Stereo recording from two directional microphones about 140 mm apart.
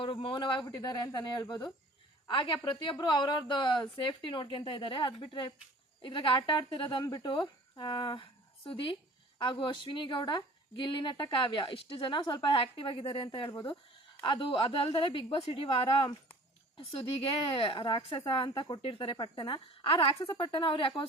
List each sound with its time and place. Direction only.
0.0 s speech: 40° left (ahead or behind)
17.5 s speech: 35° left (ahead or behind)